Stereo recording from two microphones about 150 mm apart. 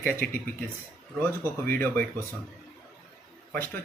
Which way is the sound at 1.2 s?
15° left (ahead or behind).